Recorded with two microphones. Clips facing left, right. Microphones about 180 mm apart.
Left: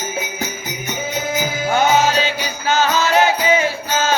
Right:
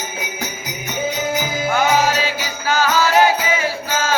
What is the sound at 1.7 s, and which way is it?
Music, 25° left (ahead or behind).